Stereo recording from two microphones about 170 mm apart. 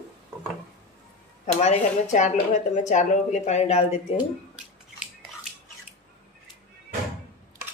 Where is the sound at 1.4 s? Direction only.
45° left (ahead or behind).